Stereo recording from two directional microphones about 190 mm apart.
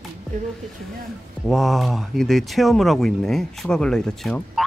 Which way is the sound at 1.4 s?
Centre (ahead or behind).